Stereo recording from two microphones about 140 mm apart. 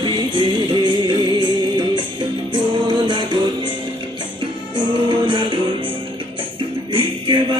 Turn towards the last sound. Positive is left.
turn(degrees=-40)  # may be behind; listen again after turning